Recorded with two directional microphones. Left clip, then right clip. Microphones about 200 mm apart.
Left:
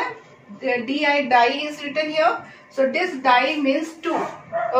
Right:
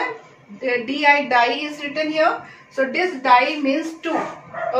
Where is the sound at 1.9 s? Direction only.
20° left (ahead or behind).